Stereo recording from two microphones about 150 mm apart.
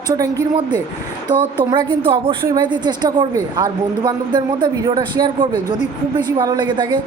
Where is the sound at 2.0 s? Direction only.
30° right (ahead or behind).